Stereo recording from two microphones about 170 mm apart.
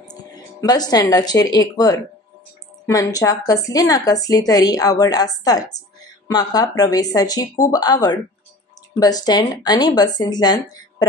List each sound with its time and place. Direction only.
0.1 s a woman's voice: 25° left (ahead or behind)